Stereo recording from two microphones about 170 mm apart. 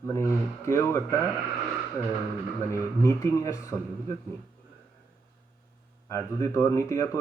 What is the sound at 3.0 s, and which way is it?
Speech, 20° left (ahead or behind).